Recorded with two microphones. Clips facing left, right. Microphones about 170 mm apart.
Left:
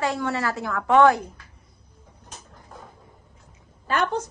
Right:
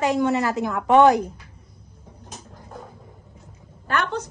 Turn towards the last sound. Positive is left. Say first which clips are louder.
# left 1 dB
turn(degrees=-65)  # may be behind; listen again after turning